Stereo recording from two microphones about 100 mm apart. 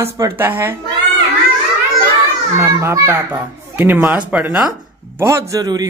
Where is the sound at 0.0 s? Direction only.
25° right (ahead or behind).